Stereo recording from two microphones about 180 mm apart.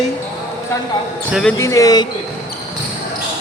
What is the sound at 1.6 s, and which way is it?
Speech, 20° left (ahead or behind).